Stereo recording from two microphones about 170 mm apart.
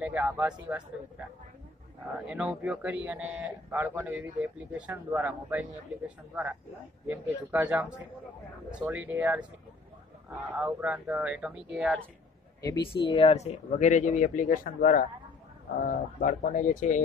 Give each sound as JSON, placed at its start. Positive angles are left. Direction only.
{"t": 0.0, "sound": "speech", "side_deg": -10}
{"t": 2.1, "sound": "speech", "side_deg": -5}
{"t": 10.5, "sound": "speech", "side_deg": -10}
{"t": 12.9, "sound": "speech", "side_deg": 35}